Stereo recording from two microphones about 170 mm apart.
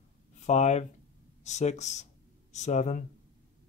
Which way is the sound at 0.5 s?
40° left (ahead or behind).